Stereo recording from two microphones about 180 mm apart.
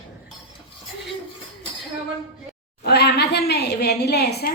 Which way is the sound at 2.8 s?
65° left (ahead or behind).